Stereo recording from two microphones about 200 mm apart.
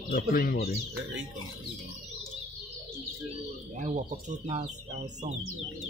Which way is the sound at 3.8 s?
35° right (ahead or behind).